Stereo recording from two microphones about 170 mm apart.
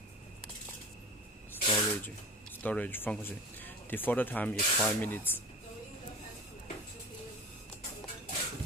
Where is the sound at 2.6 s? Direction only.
10° left (ahead or behind).